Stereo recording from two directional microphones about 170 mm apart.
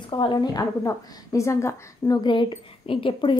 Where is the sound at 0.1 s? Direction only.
25° left (ahead or behind).